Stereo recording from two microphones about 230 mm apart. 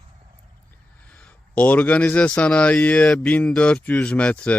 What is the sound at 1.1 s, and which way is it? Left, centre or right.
Speech, centre.